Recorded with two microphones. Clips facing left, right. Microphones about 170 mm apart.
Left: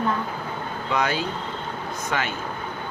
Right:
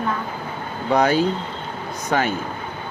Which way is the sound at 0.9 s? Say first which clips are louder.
Right 8 dB; 40° right (ahead or behind).